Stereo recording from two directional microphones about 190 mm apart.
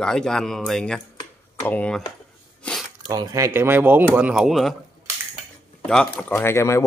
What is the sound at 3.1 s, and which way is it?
Speech, 20° right (ahead or behind).